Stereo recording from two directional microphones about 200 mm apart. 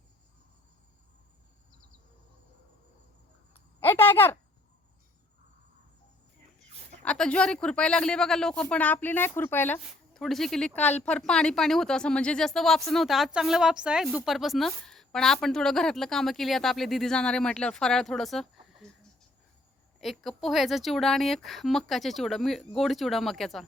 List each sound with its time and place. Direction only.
3.5 s a sound: 10° left (ahead or behind)
7.0 s speech: 5° left (ahead or behind)
20.0 s speech: centre (ahead or behind)